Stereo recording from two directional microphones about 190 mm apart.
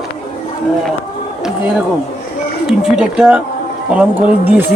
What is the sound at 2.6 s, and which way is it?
Speech, 5° right (ahead or behind).